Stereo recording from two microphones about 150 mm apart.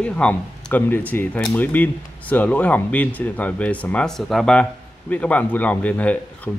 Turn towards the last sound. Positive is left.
turn(degrees=10)  # may be behind; listen again after turning